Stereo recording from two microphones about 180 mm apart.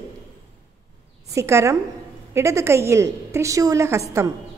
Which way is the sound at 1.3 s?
15° right (ahead or behind).